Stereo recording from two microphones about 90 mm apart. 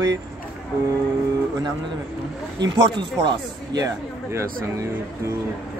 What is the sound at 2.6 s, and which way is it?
Speech, 55° right (ahead or behind).